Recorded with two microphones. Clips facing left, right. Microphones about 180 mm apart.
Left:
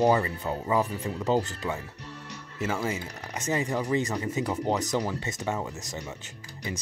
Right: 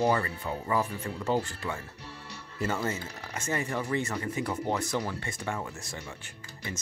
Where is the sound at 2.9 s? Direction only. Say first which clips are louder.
Left 2 dB; 15° left (ahead or behind).